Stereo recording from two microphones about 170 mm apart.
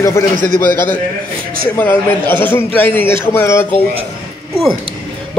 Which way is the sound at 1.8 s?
10° left (ahead or behind).